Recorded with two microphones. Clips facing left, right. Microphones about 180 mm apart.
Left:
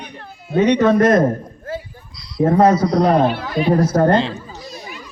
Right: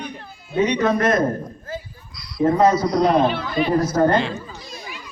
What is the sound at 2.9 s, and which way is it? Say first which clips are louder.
Speech: left 2 dB; 55° left (ahead or behind).